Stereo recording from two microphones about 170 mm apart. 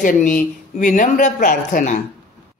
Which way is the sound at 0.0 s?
50° left (ahead or behind).